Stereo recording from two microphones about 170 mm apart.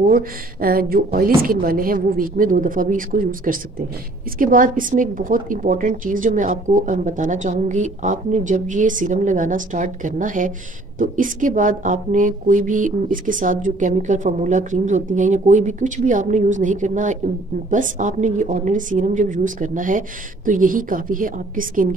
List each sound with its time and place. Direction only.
0.0 s speech: 60° right (ahead or behind)